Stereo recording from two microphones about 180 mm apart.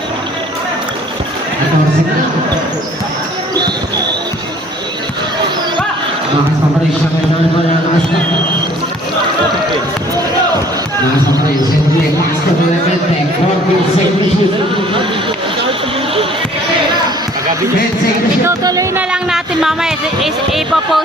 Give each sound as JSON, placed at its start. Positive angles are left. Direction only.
{"t": 18.4, "sound": "speech", "side_deg": -20}
{"t": 19.1, "sound": "speech", "side_deg": -5}